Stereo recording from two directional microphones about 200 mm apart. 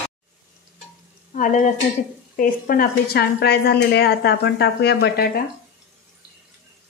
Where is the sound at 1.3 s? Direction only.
40° left (ahead or behind).